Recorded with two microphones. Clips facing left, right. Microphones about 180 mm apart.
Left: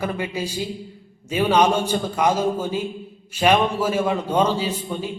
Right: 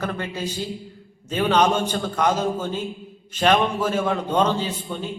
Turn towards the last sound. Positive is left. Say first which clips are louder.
# left 2 dB
turn(degrees=10)  # may be behind; listen again after turning